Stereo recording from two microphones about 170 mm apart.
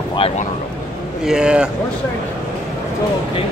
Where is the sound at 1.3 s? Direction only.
5° right (ahead or behind).